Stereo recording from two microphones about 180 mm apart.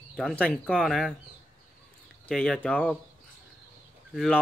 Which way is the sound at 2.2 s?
5° left (ahead or behind).